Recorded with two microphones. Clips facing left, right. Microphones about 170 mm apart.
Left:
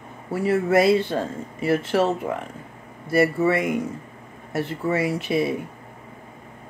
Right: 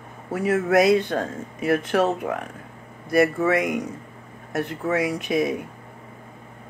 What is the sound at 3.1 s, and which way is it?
Speech, centre (ahead or behind).